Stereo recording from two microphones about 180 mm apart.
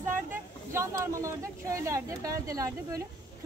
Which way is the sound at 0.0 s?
15° right (ahead or behind).